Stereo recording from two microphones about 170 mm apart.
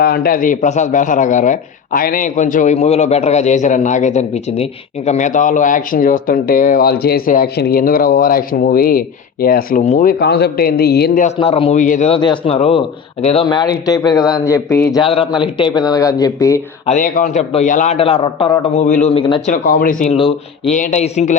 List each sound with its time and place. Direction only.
0.0 s a man's voice: 60° left (ahead or behind)
9.8 s a man's voice: 45° left (ahead or behind)
10.1 s a man's voice: 75° left (ahead or behind)
11.3 s a man's voice: 35° left (ahead or behind)
12.1 s a man's voice: 30° left (ahead or behind)
16.8 s a man's voice: 50° left (ahead or behind); by 18.6 s 25° left (ahead or behind)
18.8 s a man's voice: 45° left (ahead or behind)
19.6 s a man's voice: 55° left (ahead or behind)
20.1 s a man's voice: 30° left (ahead or behind)